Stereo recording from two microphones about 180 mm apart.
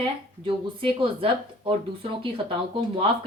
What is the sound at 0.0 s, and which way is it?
Speech, 30° right (ahead or behind).